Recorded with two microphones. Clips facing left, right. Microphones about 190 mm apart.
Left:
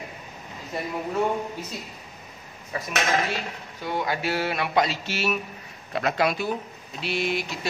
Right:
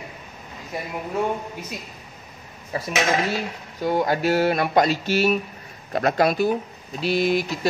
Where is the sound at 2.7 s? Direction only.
30° right (ahead or behind).